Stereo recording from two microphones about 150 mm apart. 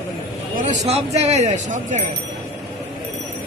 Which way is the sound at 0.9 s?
45° right (ahead or behind).